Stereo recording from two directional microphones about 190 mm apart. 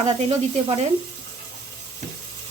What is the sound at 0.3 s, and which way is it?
Speech, 35° right (ahead or behind).